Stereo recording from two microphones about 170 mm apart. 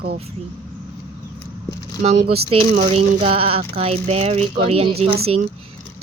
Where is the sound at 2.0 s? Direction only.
40° right (ahead or behind).